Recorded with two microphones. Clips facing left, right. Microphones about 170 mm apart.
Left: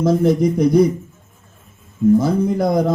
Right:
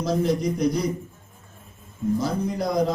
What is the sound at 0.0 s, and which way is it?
Speech, 55° left (ahead or behind).